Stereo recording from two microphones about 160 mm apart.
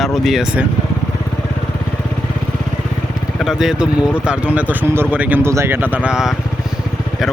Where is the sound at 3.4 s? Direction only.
5° right (ahead or behind).